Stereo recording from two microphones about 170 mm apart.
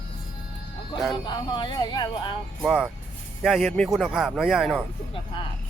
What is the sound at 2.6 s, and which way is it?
Speech, 5° right (ahead or behind).